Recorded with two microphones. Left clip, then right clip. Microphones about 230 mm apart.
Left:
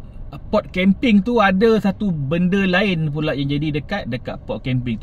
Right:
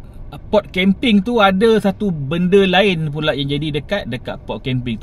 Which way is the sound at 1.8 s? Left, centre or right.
Centre.